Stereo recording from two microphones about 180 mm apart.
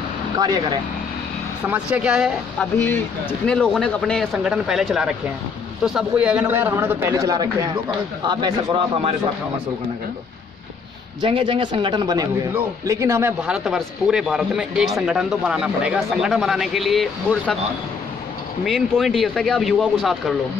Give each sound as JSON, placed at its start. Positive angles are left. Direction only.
{"t": 0.4, "sound": "a man's voice", "side_deg": -20}
{"t": 1.7, "sound": "speech", "side_deg": -5}
{"t": 2.8, "sound": "a man's voice", "side_deg": 10}
{"t": 11.1, "sound": "a man's voice", "side_deg": -25}
{"t": 13.5, "sound": "speech", "side_deg": 0}
{"t": 18.6, "sound": "speech", "side_deg": 0}